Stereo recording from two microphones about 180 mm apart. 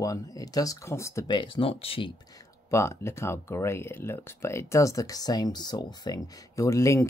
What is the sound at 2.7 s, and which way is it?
Speech, 15° left (ahead or behind).